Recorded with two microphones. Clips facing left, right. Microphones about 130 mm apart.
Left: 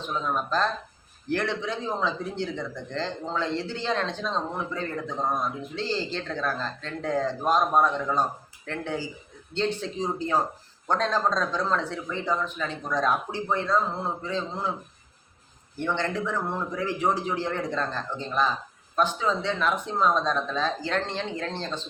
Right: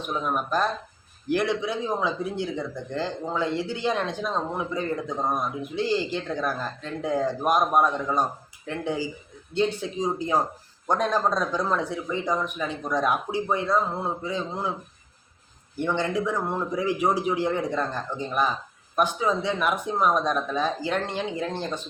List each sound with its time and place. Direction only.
0.0 s speech: 15° right (ahead or behind)
15.8 s speech: 10° right (ahead or behind)